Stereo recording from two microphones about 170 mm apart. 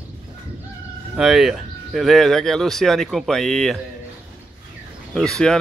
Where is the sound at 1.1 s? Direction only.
Centre (ahead or behind).